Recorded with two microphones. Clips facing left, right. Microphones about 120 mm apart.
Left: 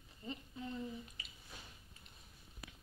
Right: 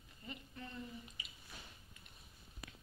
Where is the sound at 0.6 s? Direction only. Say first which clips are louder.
Left 5 dB; 15° left (ahead or behind).